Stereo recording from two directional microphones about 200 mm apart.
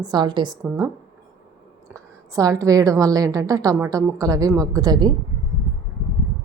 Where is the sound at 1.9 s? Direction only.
15° right (ahead or behind).